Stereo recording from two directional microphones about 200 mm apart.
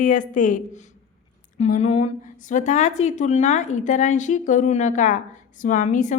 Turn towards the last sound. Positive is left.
turn(degrees=40)  # may be behind; listen again after turning